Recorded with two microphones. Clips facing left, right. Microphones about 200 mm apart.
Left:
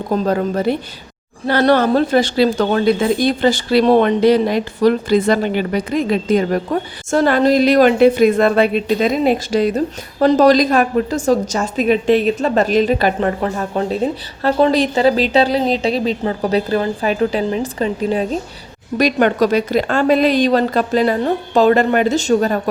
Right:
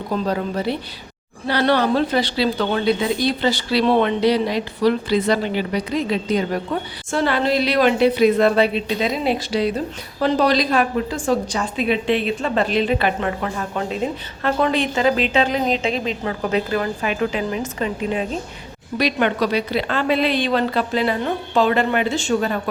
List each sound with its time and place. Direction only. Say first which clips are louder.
0.1 s a woman's voice: left 5 dB; 50° left (ahead or behind)